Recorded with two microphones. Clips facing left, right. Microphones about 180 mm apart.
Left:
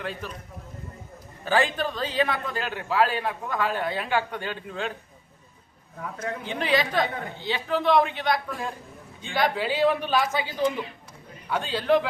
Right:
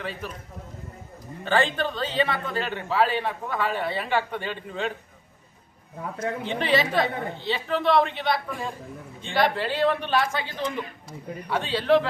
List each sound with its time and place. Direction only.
0.0 s a man's voice: centre (ahead or behind)
1.5 s a man's voice: centre (ahead or behind)
6.0 s speech: 25° right (ahead or behind)
6.5 s a man's voice: centre (ahead or behind)